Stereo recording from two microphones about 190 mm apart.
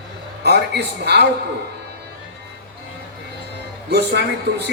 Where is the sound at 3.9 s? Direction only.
60° right (ahead or behind).